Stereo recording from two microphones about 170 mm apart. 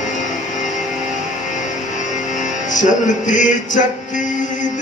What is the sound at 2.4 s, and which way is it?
Music, 45° left (ahead or behind).